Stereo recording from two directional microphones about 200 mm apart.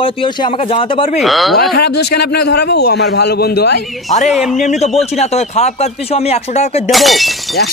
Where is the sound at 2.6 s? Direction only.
55° left (ahead or behind).